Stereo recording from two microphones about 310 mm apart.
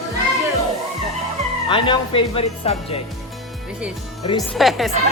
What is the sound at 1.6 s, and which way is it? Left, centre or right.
Speech, centre.